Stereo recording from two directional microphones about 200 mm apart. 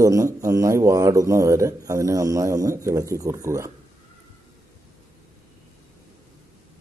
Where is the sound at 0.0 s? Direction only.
15° right (ahead or behind).